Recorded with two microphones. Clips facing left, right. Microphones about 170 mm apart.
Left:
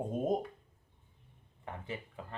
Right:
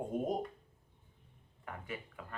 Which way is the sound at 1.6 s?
25° left (ahead or behind).